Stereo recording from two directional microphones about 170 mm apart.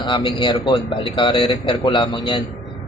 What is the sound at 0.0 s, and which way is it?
A man's voice, 30° left (ahead or behind).